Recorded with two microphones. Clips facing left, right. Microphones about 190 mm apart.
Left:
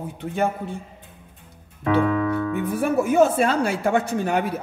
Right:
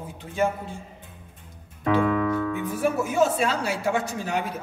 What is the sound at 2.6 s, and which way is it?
A woman's voice, 60° left (ahead or behind).